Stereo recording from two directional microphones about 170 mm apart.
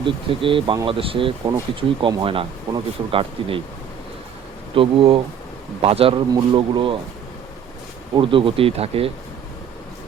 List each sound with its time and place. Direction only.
0.0 s speech: 30° right (ahead or behind)
4.7 s speech: 30° right (ahead or behind)
8.1 s speech: 30° right (ahead or behind)